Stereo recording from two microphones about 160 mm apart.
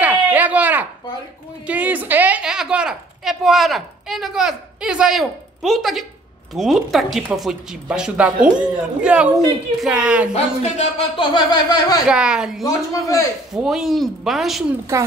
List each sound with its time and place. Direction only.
0.0 s a sound: 10° right (ahead or behind)
1.7 s a woman's voice: 10° right (ahead or behind)
10.3 s speech: 40° left (ahead or behind); by 12.0 s 25° left (ahead or behind)
12.1 s speech: 5° right (ahead or behind)
12.6 s a man's voice: 20° left (ahead or behind)
13.5 s speech: centre (ahead or behind)